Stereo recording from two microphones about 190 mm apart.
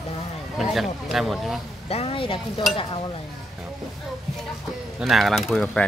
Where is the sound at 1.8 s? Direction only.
30° left (ahead or behind).